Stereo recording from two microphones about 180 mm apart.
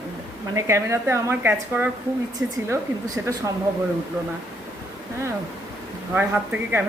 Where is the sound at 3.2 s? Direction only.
15° right (ahead or behind).